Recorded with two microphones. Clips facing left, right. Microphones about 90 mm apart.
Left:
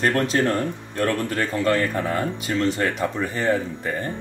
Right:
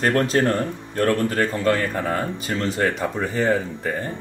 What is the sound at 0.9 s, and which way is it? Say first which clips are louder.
Speech: right 4 dB; 45° right (ahead or behind).